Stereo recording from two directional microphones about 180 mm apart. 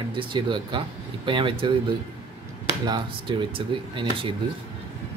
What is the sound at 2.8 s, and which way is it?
Speech, 25° right (ahead or behind).